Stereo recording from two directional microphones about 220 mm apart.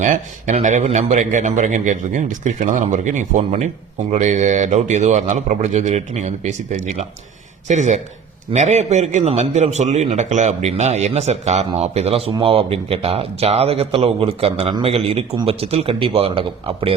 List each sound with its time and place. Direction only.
0.0 s a man's voice: 35° right (ahead or behind)